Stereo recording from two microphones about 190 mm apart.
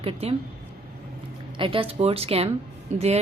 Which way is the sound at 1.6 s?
30° right (ahead or behind).